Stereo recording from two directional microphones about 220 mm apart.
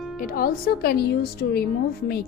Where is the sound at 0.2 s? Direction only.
40° left (ahead or behind).